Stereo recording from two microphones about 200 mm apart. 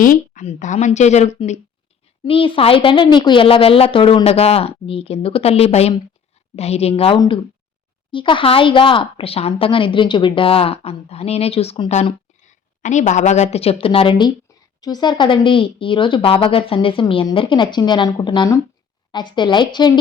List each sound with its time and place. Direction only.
0.0 s a woman's voice: 40° left (ahead or behind); by 19.9 s 20° left (ahead or behind)